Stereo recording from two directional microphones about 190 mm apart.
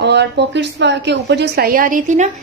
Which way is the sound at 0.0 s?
65° right (ahead or behind).